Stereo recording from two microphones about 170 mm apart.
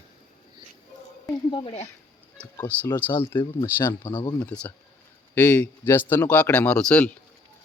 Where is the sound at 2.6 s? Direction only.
10° left (ahead or behind).